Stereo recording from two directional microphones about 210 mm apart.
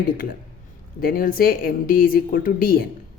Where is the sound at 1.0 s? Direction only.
45° left (ahead or behind).